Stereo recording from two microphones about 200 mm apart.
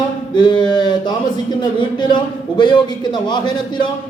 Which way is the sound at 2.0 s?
25° left (ahead or behind).